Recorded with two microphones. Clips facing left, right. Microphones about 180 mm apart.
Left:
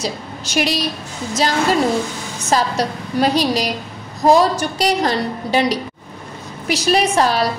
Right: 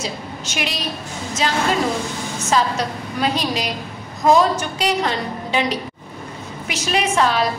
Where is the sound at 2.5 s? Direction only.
35° left (ahead or behind).